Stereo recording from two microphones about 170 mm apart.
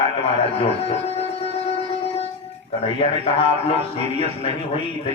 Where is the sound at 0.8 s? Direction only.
35° left (ahead or behind).